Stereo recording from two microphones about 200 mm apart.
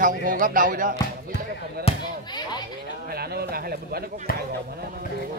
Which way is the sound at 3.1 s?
50° right (ahead or behind).